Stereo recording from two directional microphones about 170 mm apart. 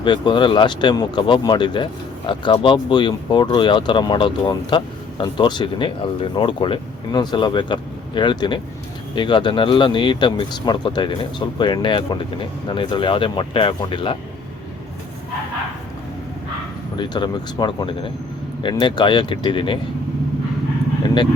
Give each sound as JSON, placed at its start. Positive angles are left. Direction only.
{"t": 0.0, "sound": "speech", "side_deg": 25}
{"t": 17.0, "sound": "speech", "side_deg": 25}